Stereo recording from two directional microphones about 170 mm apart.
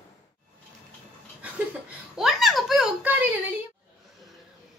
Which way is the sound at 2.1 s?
Centre (ahead or behind).